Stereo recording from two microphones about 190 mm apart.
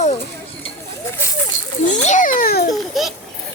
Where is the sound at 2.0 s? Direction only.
40° left (ahead or behind).